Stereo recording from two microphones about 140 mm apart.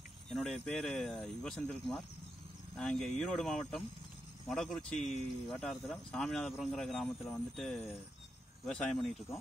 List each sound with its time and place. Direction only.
0.3 s speech: centre (ahead or behind)